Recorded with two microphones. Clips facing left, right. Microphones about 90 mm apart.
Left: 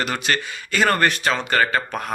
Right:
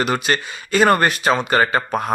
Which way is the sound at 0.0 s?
20° right (ahead or behind).